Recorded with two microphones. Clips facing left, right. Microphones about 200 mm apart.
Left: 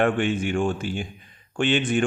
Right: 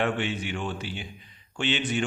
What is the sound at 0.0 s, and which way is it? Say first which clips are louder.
A man's voice: left 6 dB; 50° left (ahead or behind).